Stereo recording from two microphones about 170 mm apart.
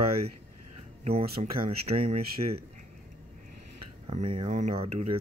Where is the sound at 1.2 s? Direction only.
65° right (ahead or behind).